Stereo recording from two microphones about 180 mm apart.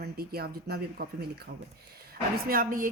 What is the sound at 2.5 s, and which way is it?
Speech, 50° right (ahead or behind).